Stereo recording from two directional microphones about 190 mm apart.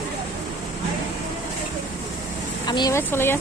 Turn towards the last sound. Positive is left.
turn(degrees=10)  # may be behind; listen again after turning